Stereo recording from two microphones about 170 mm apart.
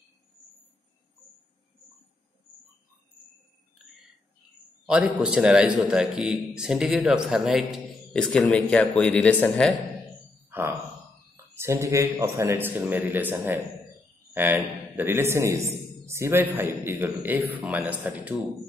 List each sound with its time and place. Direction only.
4.8 s a man's voice: 5° right (ahead or behind)
10.5 s a man's voice: 15° right (ahead or behind)